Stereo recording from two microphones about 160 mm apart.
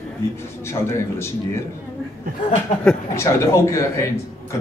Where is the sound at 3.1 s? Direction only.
15° left (ahead or behind).